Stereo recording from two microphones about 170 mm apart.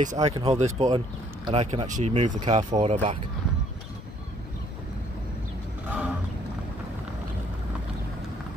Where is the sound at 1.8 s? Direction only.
45° right (ahead or behind).